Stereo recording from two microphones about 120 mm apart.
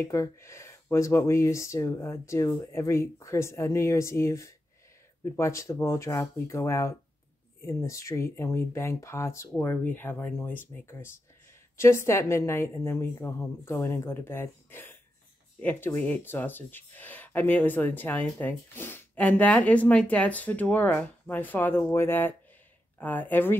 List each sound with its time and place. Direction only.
0.0 s speech: 25° left (ahead or behind)